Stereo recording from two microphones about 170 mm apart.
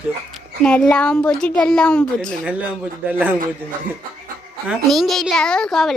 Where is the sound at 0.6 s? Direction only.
5° left (ahead or behind).